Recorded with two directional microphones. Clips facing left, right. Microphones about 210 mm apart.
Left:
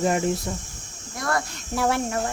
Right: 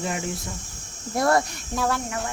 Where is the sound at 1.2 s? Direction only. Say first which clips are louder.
Right 6 dB; 30° right (ahead or behind).